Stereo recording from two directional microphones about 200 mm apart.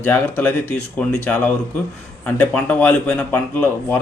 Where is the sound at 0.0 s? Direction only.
10° left (ahead or behind).